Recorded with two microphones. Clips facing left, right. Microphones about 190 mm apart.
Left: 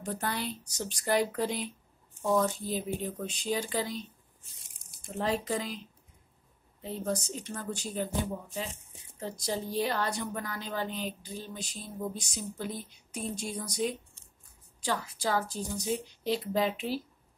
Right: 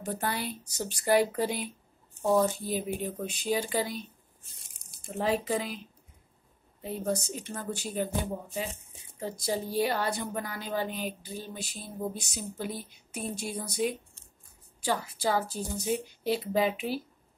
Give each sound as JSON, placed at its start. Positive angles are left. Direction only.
{"t": 0.0, "sound": "a woman's voice", "side_deg": -5}
{"t": 4.8, "sound": "a sound", "side_deg": 45}
{"t": 5.2, "sound": "a woman's voice", "side_deg": -5}
{"t": 6.8, "sound": "a woman's voice", "side_deg": -10}
{"t": 9.2, "sound": "a woman's voice", "side_deg": -5}